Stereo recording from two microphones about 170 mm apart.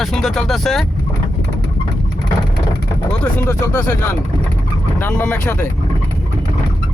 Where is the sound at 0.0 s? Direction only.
Centre (ahead or behind).